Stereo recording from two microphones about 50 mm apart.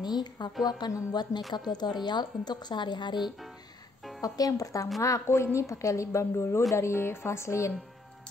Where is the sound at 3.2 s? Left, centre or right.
Centre.